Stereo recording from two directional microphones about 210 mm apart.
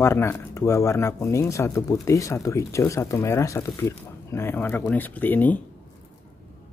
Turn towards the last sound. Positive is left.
turn(degrees=10)  # may be behind; listen again after turning